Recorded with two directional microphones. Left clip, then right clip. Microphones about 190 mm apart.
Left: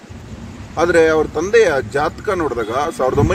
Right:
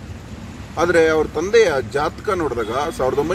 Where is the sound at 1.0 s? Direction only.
20° left (ahead or behind).